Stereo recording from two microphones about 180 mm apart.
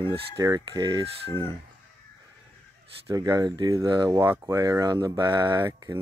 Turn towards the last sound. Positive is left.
turn(degrees=-25)  # may be behind; listen again after turning